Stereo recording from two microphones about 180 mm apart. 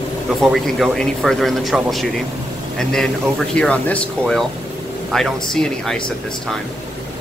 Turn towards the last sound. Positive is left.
turn(degrees=5)  # may be behind; listen again after turning